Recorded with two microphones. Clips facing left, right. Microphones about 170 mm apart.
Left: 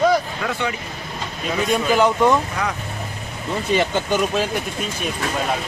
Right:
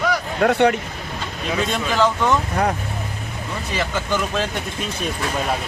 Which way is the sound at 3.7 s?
20° left (ahead or behind).